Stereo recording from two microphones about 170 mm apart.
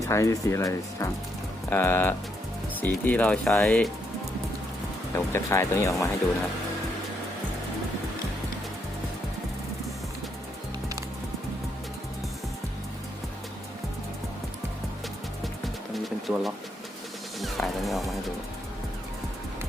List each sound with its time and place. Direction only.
0.0 s speech: 20° left (ahead or behind)
5.1 s speech: 15° left (ahead or behind)
16.0 s pigeon: centre (ahead or behind)
17.4 s music: centre (ahead or behind)